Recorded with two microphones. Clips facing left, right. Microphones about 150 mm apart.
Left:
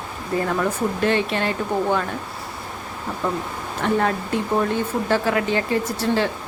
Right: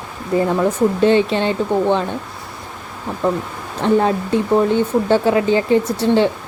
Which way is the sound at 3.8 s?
30° right (ahead or behind).